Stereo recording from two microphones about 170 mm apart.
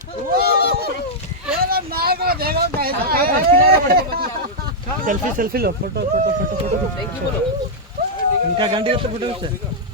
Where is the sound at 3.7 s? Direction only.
65° right (ahead or behind).